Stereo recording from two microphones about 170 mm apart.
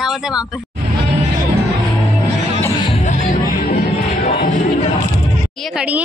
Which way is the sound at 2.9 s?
45° left (ahead or behind).